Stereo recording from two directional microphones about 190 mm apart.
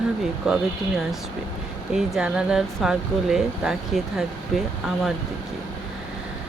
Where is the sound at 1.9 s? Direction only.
5° right (ahead or behind).